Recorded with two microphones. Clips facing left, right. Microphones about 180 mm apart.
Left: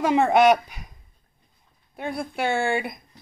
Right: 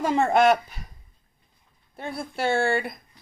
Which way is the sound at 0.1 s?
15° left (ahead or behind).